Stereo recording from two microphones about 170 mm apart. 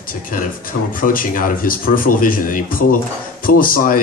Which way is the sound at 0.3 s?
55° left (ahead or behind).